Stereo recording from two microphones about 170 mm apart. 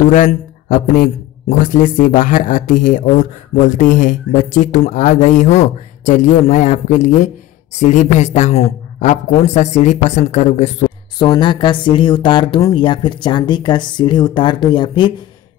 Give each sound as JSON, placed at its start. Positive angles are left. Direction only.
{"t": 0.1, "sound": "speech", "side_deg": 50}
{"t": 11.1, "sound": "speech", "side_deg": 25}